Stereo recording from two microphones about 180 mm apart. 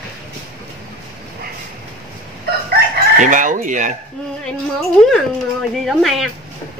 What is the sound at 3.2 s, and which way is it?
Speech, 45° right (ahead or behind).